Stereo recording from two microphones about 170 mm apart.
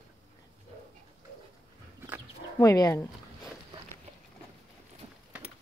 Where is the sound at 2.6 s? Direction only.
20° left (ahead or behind).